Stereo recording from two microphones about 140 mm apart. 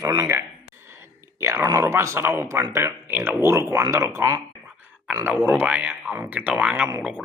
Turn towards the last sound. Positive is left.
turn(degrees=-5)  # may be behind; listen again after turning